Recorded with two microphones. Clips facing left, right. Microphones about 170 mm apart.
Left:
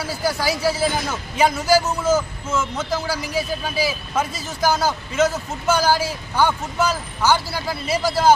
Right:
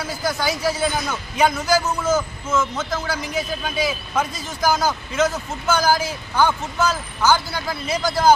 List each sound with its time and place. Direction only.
0.3 s speech: 30° left (ahead or behind)
0.6 s speech: 5° left (ahead or behind)